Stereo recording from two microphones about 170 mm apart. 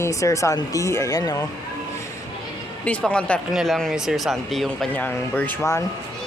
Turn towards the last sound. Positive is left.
turn(degrees=15)  # may be behind; listen again after turning